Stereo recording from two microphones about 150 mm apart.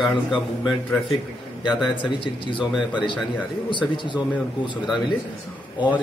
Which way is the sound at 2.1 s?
35° left (ahead or behind).